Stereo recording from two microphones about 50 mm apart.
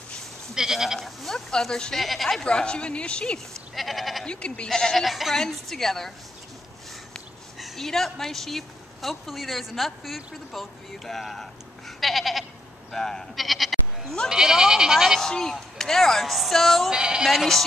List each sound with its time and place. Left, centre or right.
0.6 s speech: centre
0.9 s a woman's voice: centre
2.4 s a woman's voice: centre
3.7 s goat: centre
4.3 s speech: left
5.0 s a woman's voice: centre
7.5 s a woman's voice: centre
12.0 s goat: centre
12.9 s speech: centre
13.4 s sheep: centre
14.3 s speech: centre
15.1 s a woman's voice: centre
16.9 s speech: centre
17.3 s a woman's voice: centre